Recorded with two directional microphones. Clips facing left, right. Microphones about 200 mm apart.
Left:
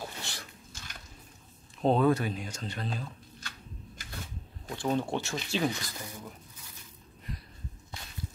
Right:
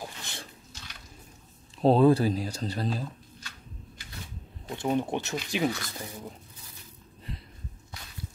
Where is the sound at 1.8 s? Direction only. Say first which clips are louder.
Right 5 dB; 30° right (ahead or behind).